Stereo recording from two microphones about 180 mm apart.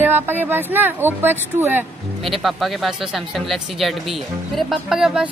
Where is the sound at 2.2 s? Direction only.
Centre (ahead or behind).